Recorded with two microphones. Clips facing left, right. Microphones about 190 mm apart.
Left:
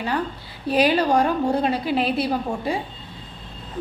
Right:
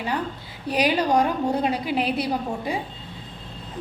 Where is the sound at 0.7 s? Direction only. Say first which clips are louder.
Left 3 dB; 15° right (ahead or behind).